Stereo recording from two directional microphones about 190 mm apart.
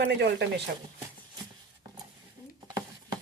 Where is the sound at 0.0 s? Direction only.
65° right (ahead or behind).